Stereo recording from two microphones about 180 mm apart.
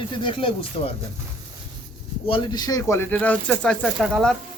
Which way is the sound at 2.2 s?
25° left (ahead or behind).